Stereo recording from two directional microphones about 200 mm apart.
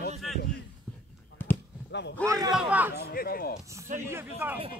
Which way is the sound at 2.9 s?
50° left (ahead or behind).